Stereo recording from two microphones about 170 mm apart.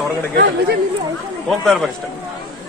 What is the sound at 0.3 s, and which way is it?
Speech, 70° right (ahead or behind).